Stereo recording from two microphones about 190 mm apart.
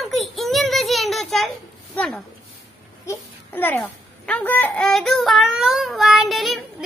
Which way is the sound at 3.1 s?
10° left (ahead or behind).